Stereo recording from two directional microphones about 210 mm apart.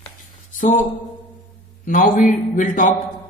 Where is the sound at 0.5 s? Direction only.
35° left (ahead or behind).